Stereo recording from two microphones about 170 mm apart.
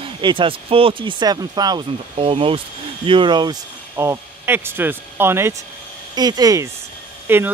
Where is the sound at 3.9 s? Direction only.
15° right (ahead or behind).